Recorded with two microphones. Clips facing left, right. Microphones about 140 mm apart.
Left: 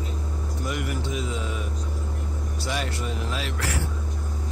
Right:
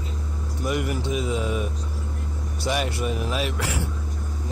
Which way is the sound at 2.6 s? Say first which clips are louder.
Right 5 dB; 15° right (ahead or behind).